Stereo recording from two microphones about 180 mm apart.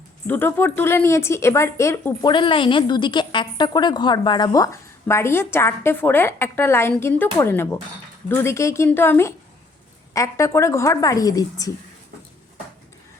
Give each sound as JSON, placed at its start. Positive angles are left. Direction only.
{"t": 0.3, "sound": "speech", "side_deg": 10}
{"t": 2.3, "sound": "a woman's voice", "side_deg": 25}